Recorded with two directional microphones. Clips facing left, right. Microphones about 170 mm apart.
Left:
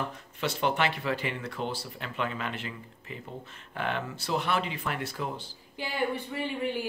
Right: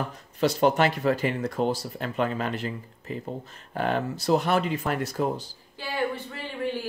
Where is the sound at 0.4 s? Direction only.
40° right (ahead or behind).